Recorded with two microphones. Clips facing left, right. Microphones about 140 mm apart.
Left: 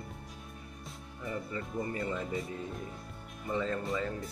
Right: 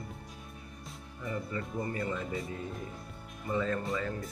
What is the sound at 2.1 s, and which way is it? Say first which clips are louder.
Speech: even; centre (ahead or behind).